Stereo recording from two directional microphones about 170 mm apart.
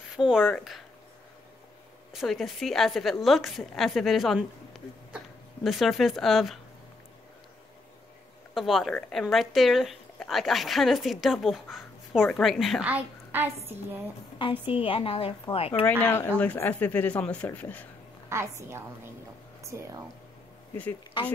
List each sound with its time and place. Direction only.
0.1 s speech: 5° right (ahead or behind)
2.1 s a woman's voice: centre (ahead or behind)
8.5 s a woman's voice: centre (ahead or behind)
14.7 s a woman's voice: 30° left (ahead or behind)
15.8 s speech: 10° left (ahead or behind)
18.3 s a woman's voice: 15° right (ahead or behind)